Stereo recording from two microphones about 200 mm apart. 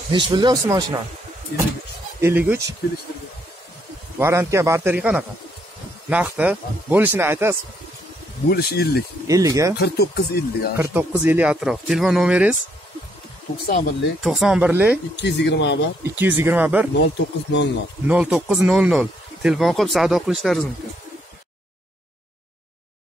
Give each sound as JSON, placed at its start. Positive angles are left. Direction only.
{"t": 0.1, "sound": "speech", "side_deg": -20}
{"t": 2.1, "sound": "speech", "side_deg": -10}
{"t": 4.2, "sound": "speech", "side_deg": -15}
{"t": 8.5, "sound": "speech", "side_deg": 50}
{"t": 9.3, "sound": "speech", "side_deg": -15}
{"t": 9.8, "sound": "speech", "side_deg": 50}
{"t": 10.8, "sound": "speech", "side_deg": -10}
{"t": 13.7, "sound": "speech", "side_deg": 50}
{"t": 14.2, "sound": "speech", "side_deg": 0}
{"t": 15.2, "sound": "speech", "side_deg": 60}
{"t": 16.0, "sound": "speech", "side_deg": -10}
{"t": 17.0, "sound": "speech", "side_deg": 65}
{"t": 18.0, "sound": "speech", "side_deg": -5}